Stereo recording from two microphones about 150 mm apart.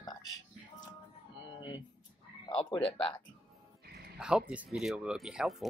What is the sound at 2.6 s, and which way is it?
Speech, 30° left (ahead or behind).